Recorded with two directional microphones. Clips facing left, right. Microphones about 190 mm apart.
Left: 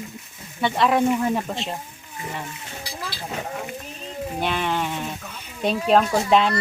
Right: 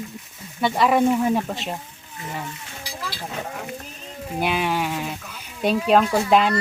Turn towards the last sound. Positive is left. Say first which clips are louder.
# right 1 dB
turn(degrees=-5)  # may be behind; listen again after turning